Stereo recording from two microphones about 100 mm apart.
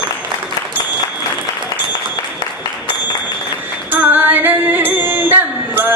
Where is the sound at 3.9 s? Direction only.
20° right (ahead or behind).